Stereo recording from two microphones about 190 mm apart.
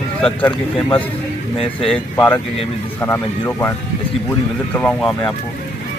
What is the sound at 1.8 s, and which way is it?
Speech, 10° left (ahead or behind).